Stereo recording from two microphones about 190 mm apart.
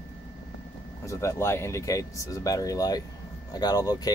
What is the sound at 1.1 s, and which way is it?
Speech, 15° left (ahead or behind).